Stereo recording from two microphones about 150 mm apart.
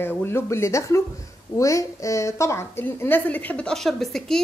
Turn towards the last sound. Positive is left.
turn(degrees=0)  # may be behind; listen again after turning